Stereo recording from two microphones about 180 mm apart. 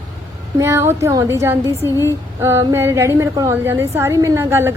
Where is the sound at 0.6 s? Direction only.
15° right (ahead or behind).